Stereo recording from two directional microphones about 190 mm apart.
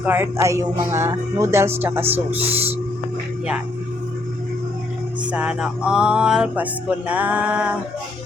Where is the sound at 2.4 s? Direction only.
30° right (ahead or behind).